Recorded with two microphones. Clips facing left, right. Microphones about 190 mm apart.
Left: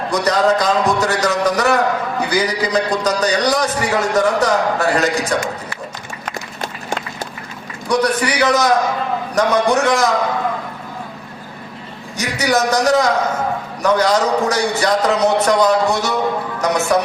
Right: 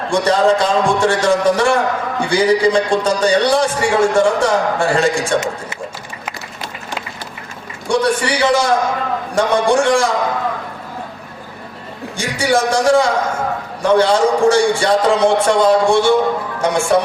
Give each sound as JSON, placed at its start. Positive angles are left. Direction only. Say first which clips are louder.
{"t": 0.1, "sound": "a man's voice", "louder": "right 2 dB", "side_deg": -30}
{"t": 7.9, "sound": "a man's voice", "louder": "right 1 dB", "side_deg": -30}
{"t": 12.1, "sound": "a man's voice", "louder": "right 1 dB", "side_deg": -30}